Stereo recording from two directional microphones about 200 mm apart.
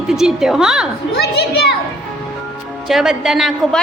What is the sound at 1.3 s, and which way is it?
Speech, 55° left (ahead or behind).